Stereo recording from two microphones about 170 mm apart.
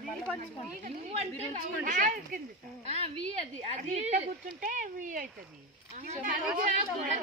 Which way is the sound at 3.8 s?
45° right (ahead or behind).